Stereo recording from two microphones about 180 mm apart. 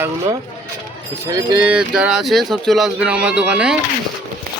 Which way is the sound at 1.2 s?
20° right (ahead or behind).